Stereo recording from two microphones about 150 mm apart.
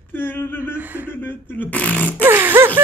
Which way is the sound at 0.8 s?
10° right (ahead or behind).